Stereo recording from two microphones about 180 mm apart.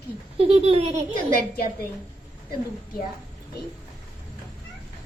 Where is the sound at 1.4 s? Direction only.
55° left (ahead or behind).